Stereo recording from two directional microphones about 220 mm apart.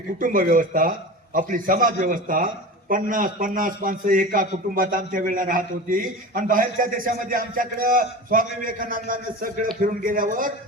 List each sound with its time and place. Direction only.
0.2 s a man's voice: 40° right (ahead or behind)